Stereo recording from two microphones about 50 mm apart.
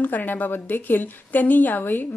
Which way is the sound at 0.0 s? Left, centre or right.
Left.